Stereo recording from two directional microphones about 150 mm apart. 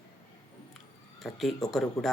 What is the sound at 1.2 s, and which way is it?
Speech, centre (ahead or behind).